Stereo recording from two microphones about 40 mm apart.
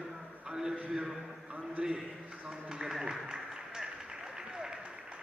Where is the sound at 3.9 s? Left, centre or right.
Centre.